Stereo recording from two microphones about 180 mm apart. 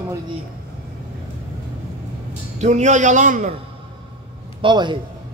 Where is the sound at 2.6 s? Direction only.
40° right (ahead or behind).